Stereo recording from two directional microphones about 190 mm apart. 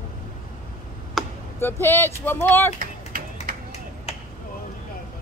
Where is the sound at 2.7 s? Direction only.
50° right (ahead or behind).